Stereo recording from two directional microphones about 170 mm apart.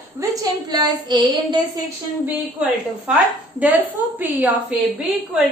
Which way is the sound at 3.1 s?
10° right (ahead or behind).